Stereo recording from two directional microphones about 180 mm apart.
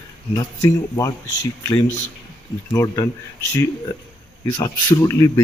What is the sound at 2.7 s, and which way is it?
Speech, 20° left (ahead or behind).